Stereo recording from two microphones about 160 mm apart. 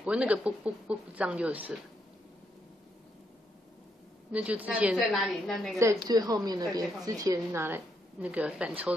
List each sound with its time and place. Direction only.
0.0 s a woman's voice: 5° right (ahead or behind)
4.3 s a woman's voice: 10° right (ahead or behind)
5.8 s a woman's voice: 20° right (ahead or behind)